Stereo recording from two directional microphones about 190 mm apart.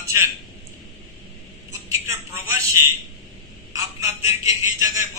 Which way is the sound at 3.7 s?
15° right (ahead or behind).